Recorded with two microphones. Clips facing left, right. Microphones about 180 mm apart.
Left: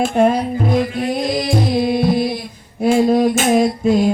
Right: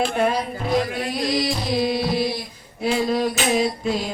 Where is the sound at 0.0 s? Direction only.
45° left (ahead or behind).